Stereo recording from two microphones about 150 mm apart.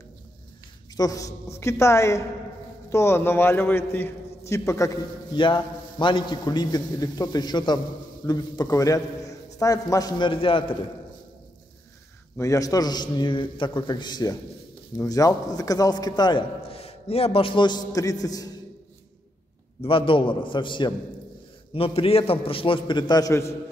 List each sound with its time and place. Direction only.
0.9 s a man's voice: 25° left (ahead or behind)
5.4 s a man's voice: 30° left (ahead or behind)
12.4 s a man's voice: 20° left (ahead or behind)
19.8 s a man's voice: 35° left (ahead or behind); by 23.5 s 20° left (ahead or behind)